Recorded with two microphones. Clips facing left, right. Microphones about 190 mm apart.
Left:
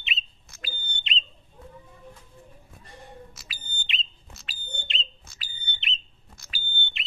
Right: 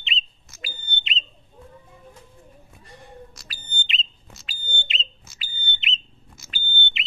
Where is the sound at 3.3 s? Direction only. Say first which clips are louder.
Right 2 dB; centre (ahead or behind).